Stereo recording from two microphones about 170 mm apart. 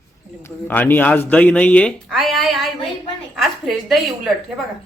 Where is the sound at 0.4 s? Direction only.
10° left (ahead or behind).